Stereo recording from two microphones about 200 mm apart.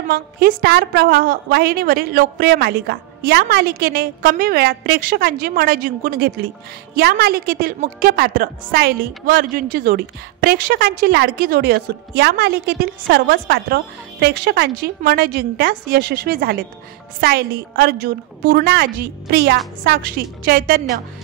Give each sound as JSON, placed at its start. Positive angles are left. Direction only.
{"t": 0.1, "sound": "a woman's voice", "side_deg": -45}